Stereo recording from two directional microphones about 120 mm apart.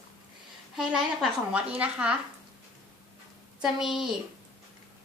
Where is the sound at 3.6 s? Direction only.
5° right (ahead or behind).